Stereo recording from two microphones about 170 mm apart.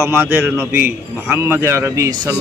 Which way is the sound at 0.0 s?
10° right (ahead or behind).